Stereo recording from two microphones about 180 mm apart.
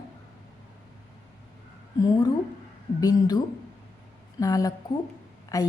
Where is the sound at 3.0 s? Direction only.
20° left (ahead or behind).